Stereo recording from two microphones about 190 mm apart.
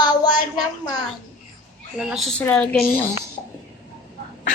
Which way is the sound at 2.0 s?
Centre (ahead or behind).